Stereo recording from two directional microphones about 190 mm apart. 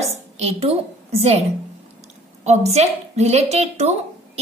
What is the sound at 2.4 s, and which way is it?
A woman's voice, 35° right (ahead or behind).